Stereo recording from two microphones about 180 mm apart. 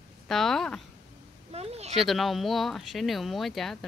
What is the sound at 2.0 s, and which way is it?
Speech, centre (ahead or behind).